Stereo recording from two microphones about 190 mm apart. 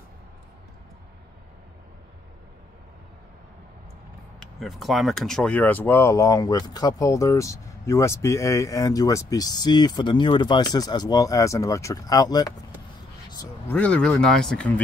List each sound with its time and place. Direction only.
4.4 s speech: centre (ahead or behind)